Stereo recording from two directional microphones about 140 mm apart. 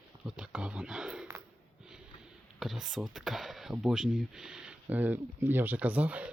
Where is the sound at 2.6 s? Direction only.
Centre (ahead or behind).